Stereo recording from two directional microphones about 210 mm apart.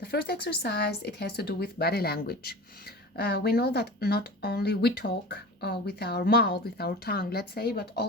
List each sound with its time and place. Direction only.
0.0 s speech: 45° left (ahead or behind)